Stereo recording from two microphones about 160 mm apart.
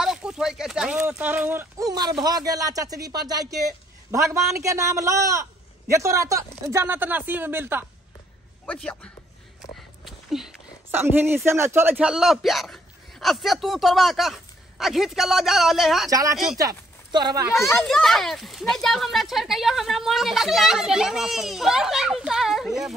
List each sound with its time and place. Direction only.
0.0 s a sound: 5° right (ahead or behind)
0.9 s a man's voice: 10° right (ahead or behind)
8.6 s speech: 5° left (ahead or behind)
10.0 s a sound: 5° right (ahead or behind)
10.9 s speech: 15° right (ahead or behind)
16.1 s a man's voice: 20° right (ahead or behind)
17.6 s a child's voice: 15° left (ahead or behind)
17.8 s speech: centre (ahead or behind)